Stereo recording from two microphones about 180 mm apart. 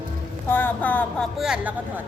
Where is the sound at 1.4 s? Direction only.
5° right (ahead or behind).